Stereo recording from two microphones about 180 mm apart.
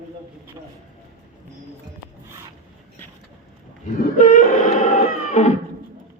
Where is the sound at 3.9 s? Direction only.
50° left (ahead or behind).